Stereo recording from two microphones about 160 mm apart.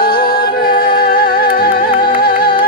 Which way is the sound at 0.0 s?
65° left (ahead or behind).